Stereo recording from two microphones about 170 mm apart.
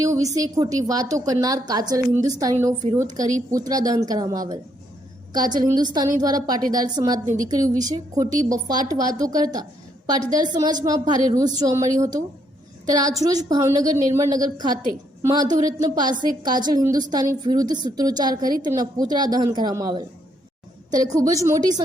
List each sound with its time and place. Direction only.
0.0 s a woman's voice: 20° right (ahead or behind)